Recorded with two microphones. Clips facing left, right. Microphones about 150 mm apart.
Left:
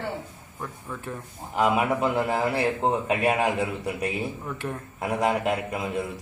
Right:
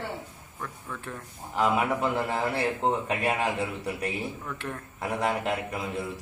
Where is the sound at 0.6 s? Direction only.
10° left (ahead or behind).